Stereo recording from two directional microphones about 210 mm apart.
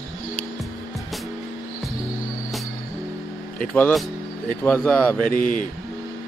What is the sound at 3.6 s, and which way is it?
Speech, 5° left (ahead or behind).